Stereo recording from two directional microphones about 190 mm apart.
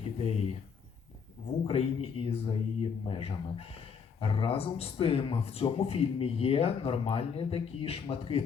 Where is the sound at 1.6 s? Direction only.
30° left (ahead or behind).